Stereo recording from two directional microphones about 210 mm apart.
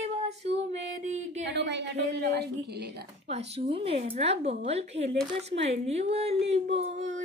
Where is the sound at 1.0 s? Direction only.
35° right (ahead or behind).